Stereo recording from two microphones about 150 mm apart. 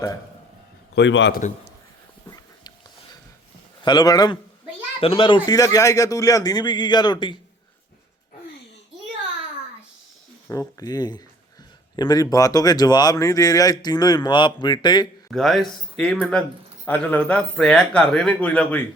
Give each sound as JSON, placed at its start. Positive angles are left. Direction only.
{"t": 1.0, "sound": "a man's voice", "side_deg": 90}
{"t": 1.3, "sound": "a man's voice", "side_deg": 55}
{"t": 2.2, "sound": "dog", "side_deg": 25}
{"t": 3.8, "sound": "speech", "side_deg": 25}
{"t": 4.9, "sound": "speech", "side_deg": 40}
{"t": 10.5, "sound": "speech", "side_deg": 25}
{"t": 15.3, "sound": "speech", "side_deg": 0}